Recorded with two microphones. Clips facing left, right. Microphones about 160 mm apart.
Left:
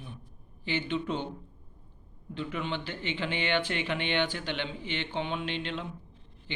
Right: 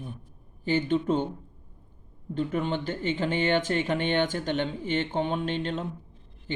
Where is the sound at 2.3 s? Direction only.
45° right (ahead or behind).